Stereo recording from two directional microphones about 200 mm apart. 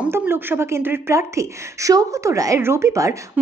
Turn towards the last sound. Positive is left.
turn(degrees=-15)  # may be behind; listen again after turning